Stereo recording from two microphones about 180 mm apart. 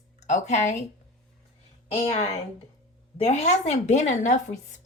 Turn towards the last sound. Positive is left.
turn(degrees=40)  # may be behind; listen again after turning